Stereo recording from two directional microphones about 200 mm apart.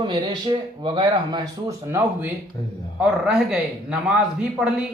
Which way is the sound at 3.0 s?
5° right (ahead or behind).